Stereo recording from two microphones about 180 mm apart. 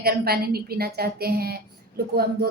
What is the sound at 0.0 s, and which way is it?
A woman's voice, 60° right (ahead or behind).